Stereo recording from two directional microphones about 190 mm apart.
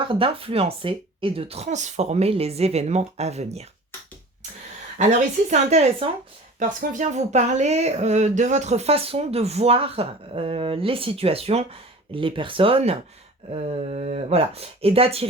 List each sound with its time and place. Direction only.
0.1 s speech: 30° right (ahead or behind)
5.5 s speech: 35° right (ahead or behind)